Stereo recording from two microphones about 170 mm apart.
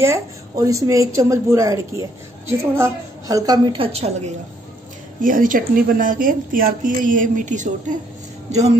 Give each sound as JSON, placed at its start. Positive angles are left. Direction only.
{"t": 0.0, "sound": "a woman's voice", "side_deg": -15}
{"t": 5.2, "sound": "a woman's voice", "side_deg": -50}